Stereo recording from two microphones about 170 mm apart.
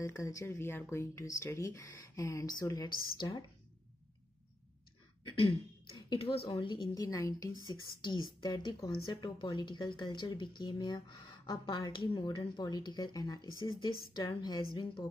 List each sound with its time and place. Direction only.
0.0 s speech: 20° left (ahead or behind)
5.9 s speech: 30° left (ahead or behind)